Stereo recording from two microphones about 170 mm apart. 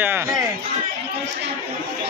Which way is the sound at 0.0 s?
15° right (ahead or behind).